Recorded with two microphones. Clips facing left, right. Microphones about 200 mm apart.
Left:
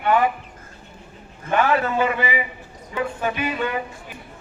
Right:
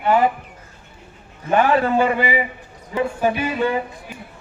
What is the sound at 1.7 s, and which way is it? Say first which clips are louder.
Music: right 3 dB; 30° right (ahead or behind).